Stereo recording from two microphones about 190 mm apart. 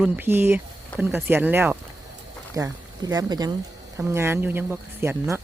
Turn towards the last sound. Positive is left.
turn(degrees=-15)  # may be behind; listen again after turning